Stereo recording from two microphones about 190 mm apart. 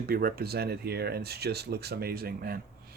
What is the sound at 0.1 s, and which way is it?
Speech, 50° right (ahead or behind).